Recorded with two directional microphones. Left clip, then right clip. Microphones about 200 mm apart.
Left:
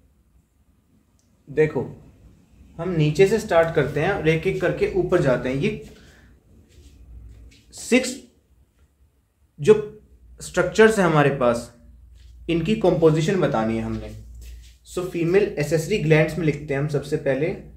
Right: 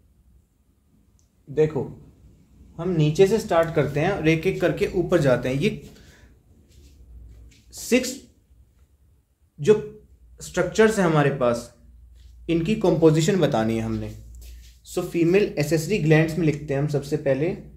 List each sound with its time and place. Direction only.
1.5 s a man's voice: 10° right (ahead or behind); by 5.7 s 50° right (ahead or behind)
7.4 s a sound: 5° right (ahead or behind)
10.3 s speech: centre (ahead or behind)
13.0 s speech: 35° right (ahead or behind)